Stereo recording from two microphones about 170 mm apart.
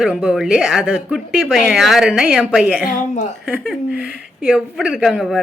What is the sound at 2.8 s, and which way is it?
Speech, 45° left (ahead or behind).